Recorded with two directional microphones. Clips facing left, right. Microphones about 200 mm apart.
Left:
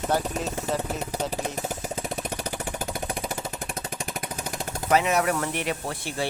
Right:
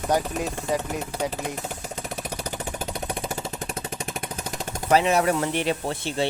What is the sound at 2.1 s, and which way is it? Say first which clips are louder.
Vehicle: left 1 dB; 5° right (ahead or behind).